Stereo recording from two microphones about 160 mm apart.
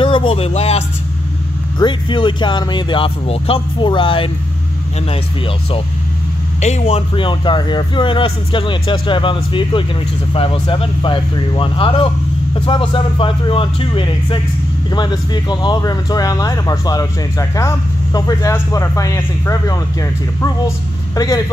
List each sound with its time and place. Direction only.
0.0 s speech: 30° left (ahead or behind)
1.8 s speech: 30° left (ahead or behind)
6.6 s a man's voice: 45° left (ahead or behind)
7.2 s speech: 30° left (ahead or behind)